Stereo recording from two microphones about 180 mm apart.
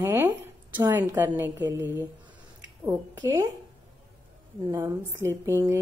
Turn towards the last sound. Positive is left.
turn(degrees=-15)  # may be behind; listen again after turning